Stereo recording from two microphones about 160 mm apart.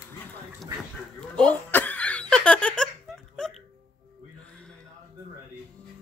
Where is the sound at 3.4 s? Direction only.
5° left (ahead or behind).